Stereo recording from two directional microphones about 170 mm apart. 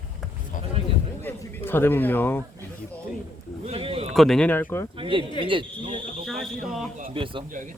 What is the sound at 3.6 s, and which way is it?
Speech, 35° right (ahead or behind).